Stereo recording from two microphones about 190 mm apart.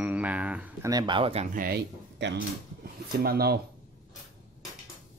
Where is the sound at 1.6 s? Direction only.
55° right (ahead or behind).